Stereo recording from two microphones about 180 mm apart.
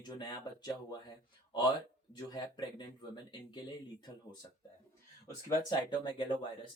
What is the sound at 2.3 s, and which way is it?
Speech, 25° left (ahead or behind).